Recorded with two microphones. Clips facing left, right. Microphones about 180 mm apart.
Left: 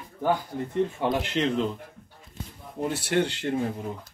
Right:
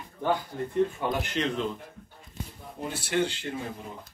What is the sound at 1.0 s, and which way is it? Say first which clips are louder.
Speech: left 3 dB; 30° left (ahead or behind).